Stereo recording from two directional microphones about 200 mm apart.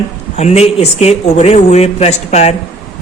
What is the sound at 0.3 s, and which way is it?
Speech, 35° left (ahead or behind).